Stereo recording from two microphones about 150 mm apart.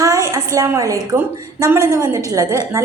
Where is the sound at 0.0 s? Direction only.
20° right (ahead or behind).